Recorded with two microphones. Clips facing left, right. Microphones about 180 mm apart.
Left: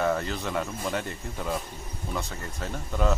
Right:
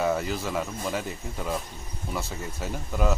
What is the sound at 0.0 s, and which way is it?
Speech, 5° right (ahead or behind).